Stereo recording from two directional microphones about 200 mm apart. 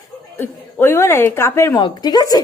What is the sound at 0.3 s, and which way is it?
A woman's voice, 10° left (ahead or behind).